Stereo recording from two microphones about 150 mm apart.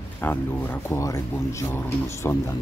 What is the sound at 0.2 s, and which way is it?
Speech, 15° left (ahead or behind).